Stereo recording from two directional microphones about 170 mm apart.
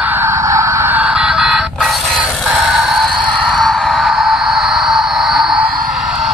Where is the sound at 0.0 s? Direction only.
15° right (ahead or behind).